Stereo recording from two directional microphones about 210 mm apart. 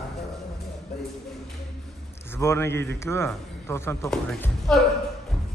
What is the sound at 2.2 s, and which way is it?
A man's voice, 10° left (ahead or behind).